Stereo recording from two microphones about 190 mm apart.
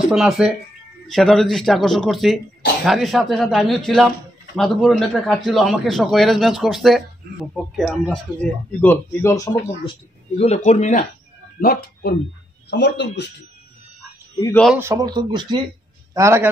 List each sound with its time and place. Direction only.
0.1 s a man's voice: centre (ahead or behind); by 9.9 s 15° left (ahead or behind)
10.3 s speech: 35° left (ahead or behind)
11.6 s speech: 50° left (ahead or behind)
12.6 s speech: 65° left (ahead or behind)
14.8 s a man's voice: 15° right (ahead or behind)